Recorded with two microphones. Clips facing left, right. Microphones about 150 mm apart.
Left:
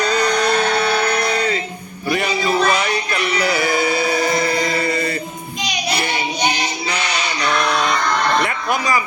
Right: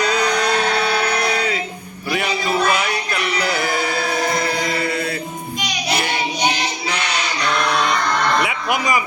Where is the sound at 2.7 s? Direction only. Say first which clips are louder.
Left 1 dB; 5° right (ahead or behind).